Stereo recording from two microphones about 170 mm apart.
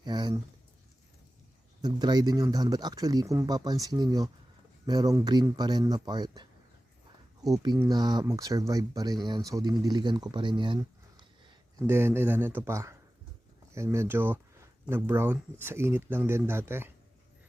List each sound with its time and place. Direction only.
0.0 s a sound: 25° right (ahead or behind)
1.8 s speech: 25° right (ahead or behind)
11.9 s speech: 15° right (ahead or behind)